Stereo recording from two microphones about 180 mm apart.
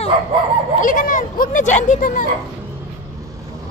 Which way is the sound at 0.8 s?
50° left (ahead or behind).